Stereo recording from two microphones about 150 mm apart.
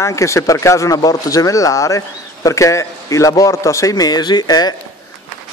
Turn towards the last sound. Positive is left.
turn(degrees=25)  # may be behind; listen again after turning